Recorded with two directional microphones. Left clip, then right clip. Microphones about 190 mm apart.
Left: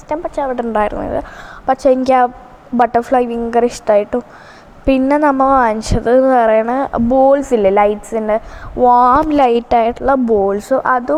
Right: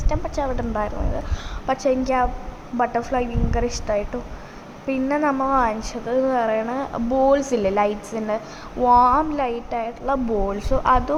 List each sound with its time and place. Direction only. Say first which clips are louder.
0.3 s a woman's voice: left 9 dB; 35° left (ahead or behind)